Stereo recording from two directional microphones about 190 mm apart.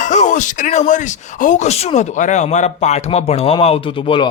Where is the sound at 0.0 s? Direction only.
40° left (ahead or behind).